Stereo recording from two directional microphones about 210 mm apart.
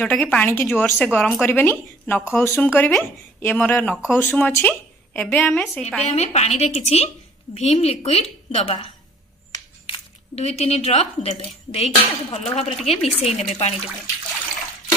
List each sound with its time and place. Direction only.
0.0 s a woman's voice: 5° left (ahead or behind)
4.3 s a woman's voice: 10° left (ahead or behind)
6.1 s a woman's voice: 30° left (ahead or behind)